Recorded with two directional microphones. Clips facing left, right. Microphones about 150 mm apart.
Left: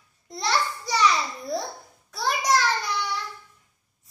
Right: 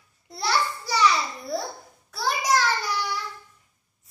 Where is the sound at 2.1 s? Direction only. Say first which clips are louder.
Even; 5° right (ahead or behind).